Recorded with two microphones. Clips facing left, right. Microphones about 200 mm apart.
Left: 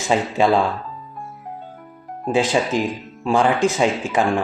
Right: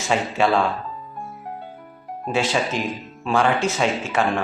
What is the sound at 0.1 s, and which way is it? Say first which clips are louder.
Speech: left 3 dB; 15° left (ahead or behind).